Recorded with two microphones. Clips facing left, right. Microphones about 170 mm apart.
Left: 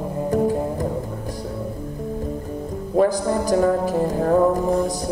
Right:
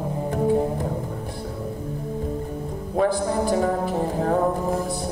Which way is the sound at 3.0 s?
40° left (ahead or behind).